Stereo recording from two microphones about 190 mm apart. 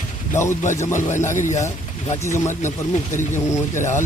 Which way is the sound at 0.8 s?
15° left (ahead or behind).